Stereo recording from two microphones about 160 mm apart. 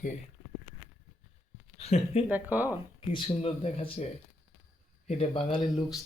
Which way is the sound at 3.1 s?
35° left (ahead or behind).